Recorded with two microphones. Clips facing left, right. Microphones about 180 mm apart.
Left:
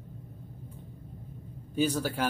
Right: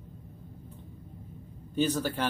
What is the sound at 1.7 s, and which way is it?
Speech, 10° left (ahead or behind).